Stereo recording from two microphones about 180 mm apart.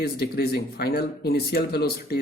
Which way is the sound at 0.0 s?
55° left (ahead or behind).